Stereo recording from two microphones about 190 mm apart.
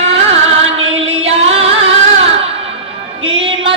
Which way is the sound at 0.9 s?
30° right (ahead or behind).